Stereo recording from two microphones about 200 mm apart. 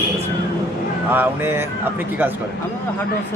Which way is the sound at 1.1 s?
10° right (ahead or behind).